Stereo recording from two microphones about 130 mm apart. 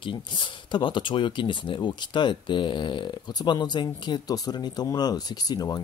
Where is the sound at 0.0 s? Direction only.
40° left (ahead or behind).